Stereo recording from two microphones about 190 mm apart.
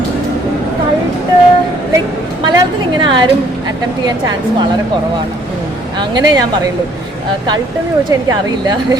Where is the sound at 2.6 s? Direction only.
25° right (ahead or behind).